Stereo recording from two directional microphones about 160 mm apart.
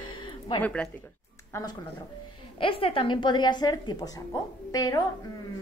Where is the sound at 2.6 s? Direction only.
35° left (ahead or behind).